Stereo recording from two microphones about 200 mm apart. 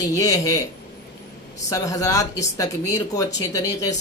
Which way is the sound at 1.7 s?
15° left (ahead or behind).